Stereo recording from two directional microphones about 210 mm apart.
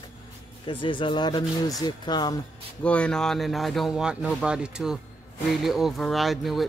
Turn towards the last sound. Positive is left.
turn(degrees=0)  # may be behind; listen again after turning